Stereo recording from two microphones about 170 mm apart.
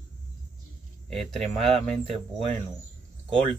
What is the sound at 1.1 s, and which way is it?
Speech, centre (ahead or behind).